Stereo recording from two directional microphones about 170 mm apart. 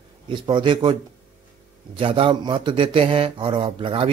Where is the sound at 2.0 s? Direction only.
30° right (ahead or behind).